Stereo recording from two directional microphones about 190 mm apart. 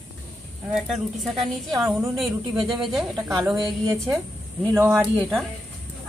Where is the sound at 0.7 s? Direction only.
Centre (ahead or behind).